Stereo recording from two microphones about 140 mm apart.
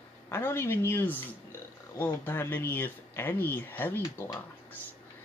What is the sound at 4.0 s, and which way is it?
Speech, 30° left (ahead or behind).